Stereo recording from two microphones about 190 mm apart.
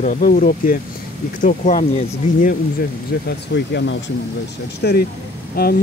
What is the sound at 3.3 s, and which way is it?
Speech, 65° left (ahead or behind).